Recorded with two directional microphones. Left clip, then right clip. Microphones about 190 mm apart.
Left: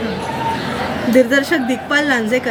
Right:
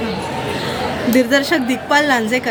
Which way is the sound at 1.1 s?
20° right (ahead or behind).